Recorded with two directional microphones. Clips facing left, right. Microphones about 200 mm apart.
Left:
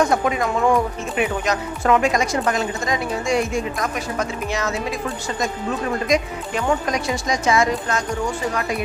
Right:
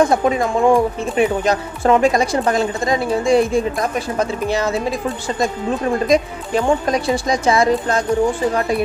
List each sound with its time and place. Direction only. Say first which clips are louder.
0.0 s speech: right 4 dB; 30° right (ahead or behind)
6.1 s speech: right 4 dB; 30° right (ahead or behind)